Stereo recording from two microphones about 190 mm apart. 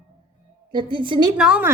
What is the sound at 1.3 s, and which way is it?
Speech, 5° right (ahead or behind).